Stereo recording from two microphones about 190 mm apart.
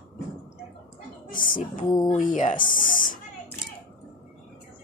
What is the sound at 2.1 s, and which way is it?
Speech, 45° left (ahead or behind).